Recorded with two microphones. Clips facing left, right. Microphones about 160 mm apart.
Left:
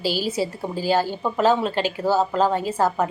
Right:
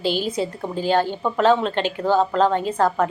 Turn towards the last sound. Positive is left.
turn(degrees=10)  # may be behind; listen again after turning